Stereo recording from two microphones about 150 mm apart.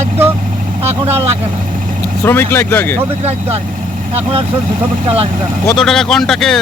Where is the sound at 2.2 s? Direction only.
15° left (ahead or behind).